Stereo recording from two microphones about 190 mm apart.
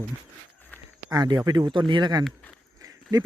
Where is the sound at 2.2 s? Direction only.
5° left (ahead or behind).